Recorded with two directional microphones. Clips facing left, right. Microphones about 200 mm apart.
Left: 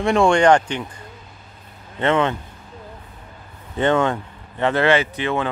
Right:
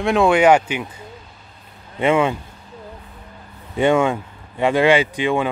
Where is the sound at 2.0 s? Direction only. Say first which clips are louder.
Right 2 dB; 10° right (ahead or behind).